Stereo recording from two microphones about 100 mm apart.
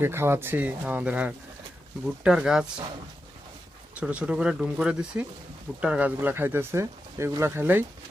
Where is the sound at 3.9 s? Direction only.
15° right (ahead or behind).